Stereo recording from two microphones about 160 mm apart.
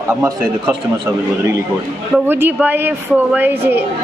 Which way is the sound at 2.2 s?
15° right (ahead or behind).